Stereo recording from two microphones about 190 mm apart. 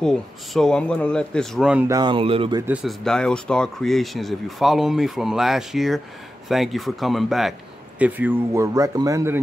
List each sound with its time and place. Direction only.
0.0 s speech: 5° left (ahead or behind)
1.9 s speech: 20° right (ahead or behind)
2.7 s speech: centre (ahead or behind)